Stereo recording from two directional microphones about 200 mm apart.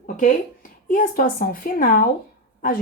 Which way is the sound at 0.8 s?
45° left (ahead or behind).